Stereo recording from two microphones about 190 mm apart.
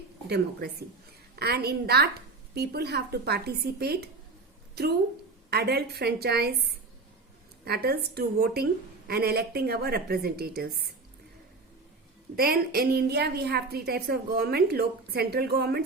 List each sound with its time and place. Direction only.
0.3 s a woman's voice: 55° right (ahead or behind)
5.5 s a woman's voice: 60° right (ahead or behind)
12.4 s a woman's voice: 50° right (ahead or behind)